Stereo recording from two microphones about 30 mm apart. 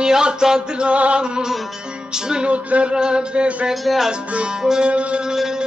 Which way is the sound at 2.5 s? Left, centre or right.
Right.